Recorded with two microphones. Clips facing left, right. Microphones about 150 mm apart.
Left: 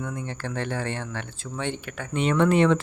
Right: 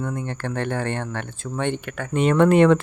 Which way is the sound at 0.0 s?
55° right (ahead or behind).